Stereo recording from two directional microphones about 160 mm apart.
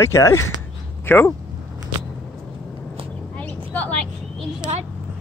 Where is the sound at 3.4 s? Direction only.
10° left (ahead or behind).